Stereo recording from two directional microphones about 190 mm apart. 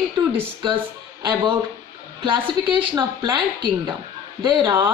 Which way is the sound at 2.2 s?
25° right (ahead or behind).